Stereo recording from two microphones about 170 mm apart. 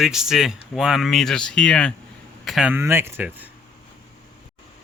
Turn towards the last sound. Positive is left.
turn(degrees=-10)  # may be behind; listen again after turning